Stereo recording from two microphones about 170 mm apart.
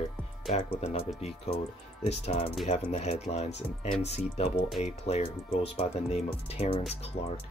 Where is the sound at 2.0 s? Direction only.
40° left (ahead or behind).